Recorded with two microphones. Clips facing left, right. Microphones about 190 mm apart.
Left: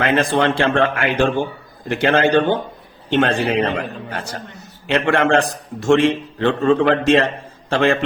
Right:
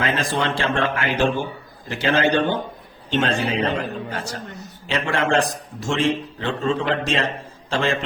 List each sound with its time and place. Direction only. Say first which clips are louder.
0.0 s a man's voice: left 6 dB; 60° left (ahead or behind)